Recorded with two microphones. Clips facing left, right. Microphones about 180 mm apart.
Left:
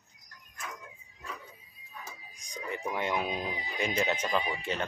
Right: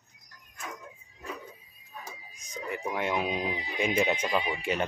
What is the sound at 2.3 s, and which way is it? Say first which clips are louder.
Speech: right 2 dB; 5° right (ahead or behind).